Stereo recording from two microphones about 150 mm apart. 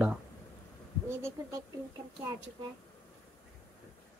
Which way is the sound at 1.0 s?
20° right (ahead or behind).